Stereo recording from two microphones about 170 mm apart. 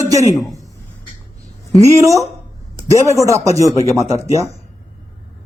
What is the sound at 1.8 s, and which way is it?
Speech, 20° right (ahead or behind).